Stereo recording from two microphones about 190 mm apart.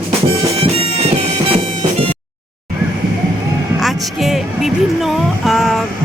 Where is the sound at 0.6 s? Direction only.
30° right (ahead or behind).